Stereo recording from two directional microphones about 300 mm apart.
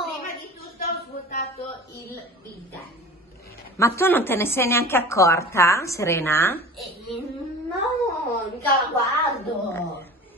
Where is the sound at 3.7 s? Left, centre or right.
Centre.